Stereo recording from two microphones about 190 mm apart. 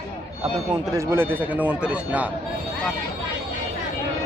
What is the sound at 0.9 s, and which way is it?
Speech, 15° right (ahead or behind).